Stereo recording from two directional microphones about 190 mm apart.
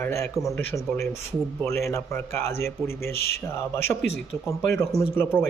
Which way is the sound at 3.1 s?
55° left (ahead or behind).